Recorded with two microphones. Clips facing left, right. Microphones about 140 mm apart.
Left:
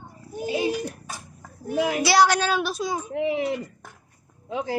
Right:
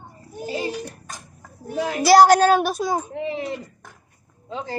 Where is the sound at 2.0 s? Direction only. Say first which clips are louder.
Right 9 dB; 45° right (ahead or behind).